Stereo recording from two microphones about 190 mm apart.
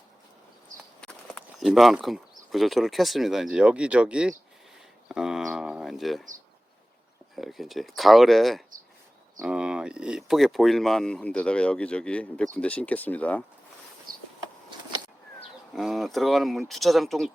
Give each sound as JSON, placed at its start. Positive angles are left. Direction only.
{"t": 1.0, "sound": "speech", "side_deg": 0}
{"t": 7.3, "sound": "speech", "side_deg": 0}
{"t": 14.1, "sound": "a sound", "side_deg": -50}
{"t": 15.7, "sound": "speech", "side_deg": 0}